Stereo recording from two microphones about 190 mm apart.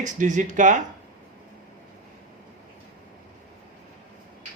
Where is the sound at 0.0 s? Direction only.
40° right (ahead or behind).